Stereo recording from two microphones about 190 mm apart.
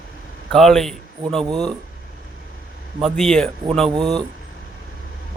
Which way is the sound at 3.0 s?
Centre (ahead or behind).